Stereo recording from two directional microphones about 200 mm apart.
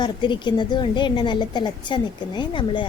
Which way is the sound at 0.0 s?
20° left (ahead or behind).